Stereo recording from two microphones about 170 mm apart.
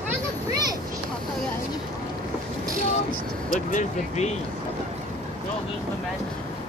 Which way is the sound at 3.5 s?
45° left (ahead or behind).